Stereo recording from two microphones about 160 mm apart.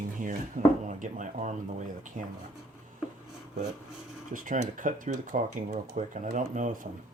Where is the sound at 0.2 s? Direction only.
55° right (ahead or behind).